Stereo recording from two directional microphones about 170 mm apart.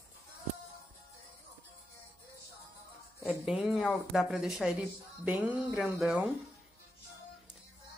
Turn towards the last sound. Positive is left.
turn(degrees=-5)  # may be behind; listen again after turning